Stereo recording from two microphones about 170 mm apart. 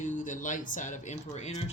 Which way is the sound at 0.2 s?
50° left (ahead or behind).